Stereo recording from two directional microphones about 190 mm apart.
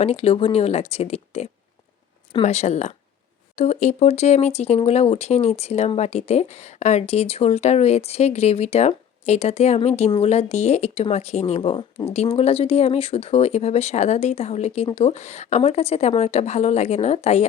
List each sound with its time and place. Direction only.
0.0 s speech: 30° left (ahead or behind)